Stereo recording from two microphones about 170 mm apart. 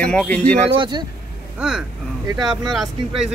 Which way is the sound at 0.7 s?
30° right (ahead or behind).